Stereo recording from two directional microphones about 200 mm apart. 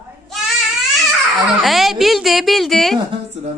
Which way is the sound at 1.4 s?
Centre (ahead or behind).